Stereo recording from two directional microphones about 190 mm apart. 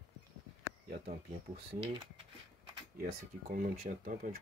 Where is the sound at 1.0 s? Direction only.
30° right (ahead or behind).